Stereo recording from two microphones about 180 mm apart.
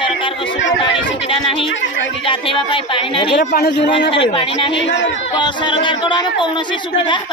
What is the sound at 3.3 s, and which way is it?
Speech, 65° left (ahead or behind).